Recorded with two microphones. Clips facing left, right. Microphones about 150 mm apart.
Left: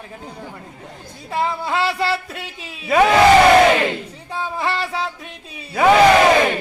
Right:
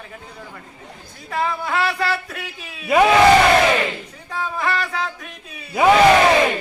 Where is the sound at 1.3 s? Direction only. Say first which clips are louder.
Left 1 dB; 25° left (ahead or behind).